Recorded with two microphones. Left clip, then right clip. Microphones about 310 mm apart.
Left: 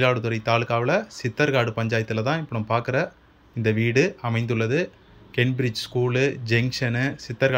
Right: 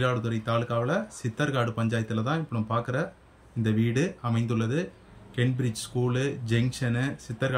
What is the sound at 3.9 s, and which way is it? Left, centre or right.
Speech, centre.